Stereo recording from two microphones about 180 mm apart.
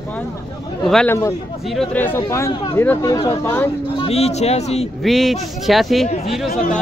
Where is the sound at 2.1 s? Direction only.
15° left (ahead or behind).